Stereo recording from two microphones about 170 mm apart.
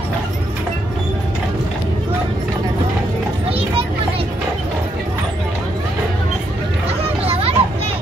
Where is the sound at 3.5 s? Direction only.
35° right (ahead or behind).